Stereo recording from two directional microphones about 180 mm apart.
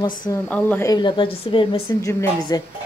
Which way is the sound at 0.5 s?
5° left (ahead or behind).